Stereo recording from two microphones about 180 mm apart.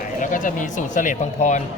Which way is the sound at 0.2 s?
45° left (ahead or behind).